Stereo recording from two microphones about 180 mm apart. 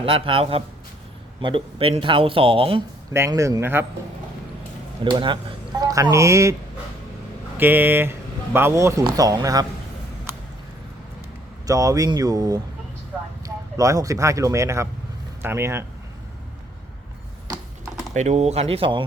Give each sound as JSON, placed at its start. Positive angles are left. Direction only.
{"t": 0.0, "sound": "speech", "side_deg": -30}
{"t": 3.1, "sound": "a man's voice", "side_deg": -15}
{"t": 5.0, "sound": "a man's voice", "side_deg": -25}
{"t": 11.6, "sound": "speech", "side_deg": -20}
{"t": 13.7, "sound": "a man's voice", "side_deg": -20}
{"t": 18.1, "sound": "speech", "side_deg": -40}